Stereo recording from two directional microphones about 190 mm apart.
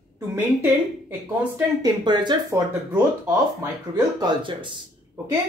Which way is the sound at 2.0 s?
25° right (ahead or behind).